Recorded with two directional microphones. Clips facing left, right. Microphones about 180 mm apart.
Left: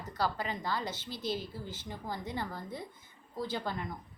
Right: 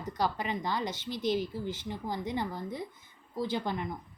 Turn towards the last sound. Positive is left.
turn(degrees=-15)  # may be behind; listen again after turning